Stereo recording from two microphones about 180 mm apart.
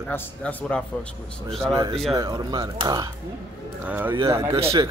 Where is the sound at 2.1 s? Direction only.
20° right (ahead or behind).